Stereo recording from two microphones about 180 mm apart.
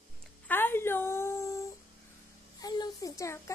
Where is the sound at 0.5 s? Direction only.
10° left (ahead or behind).